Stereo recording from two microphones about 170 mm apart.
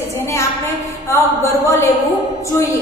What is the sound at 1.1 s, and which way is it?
Speech, 15° left (ahead or behind).